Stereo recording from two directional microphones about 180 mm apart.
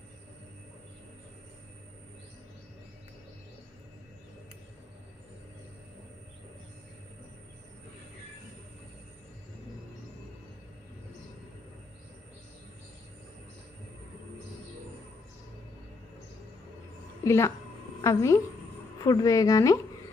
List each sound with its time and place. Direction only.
17.2 s a woman's voice: 15° left (ahead or behind)